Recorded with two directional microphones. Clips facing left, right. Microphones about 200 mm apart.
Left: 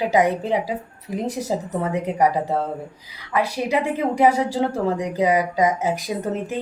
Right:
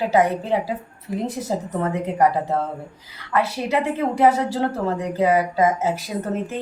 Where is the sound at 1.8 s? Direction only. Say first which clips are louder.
Right 1 dB; 15° left (ahead or behind).